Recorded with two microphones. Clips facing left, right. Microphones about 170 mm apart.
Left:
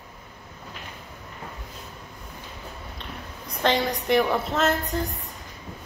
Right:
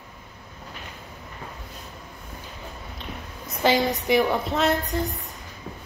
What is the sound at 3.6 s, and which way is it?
A woman's voice, 5° right (ahead or behind).